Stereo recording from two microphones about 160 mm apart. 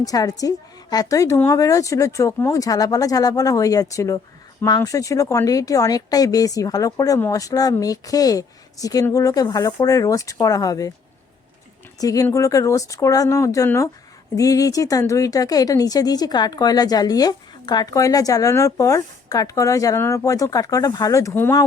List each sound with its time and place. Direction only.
0.0 s speech: 25° left (ahead or behind)
11.9 s speech: 20° left (ahead or behind)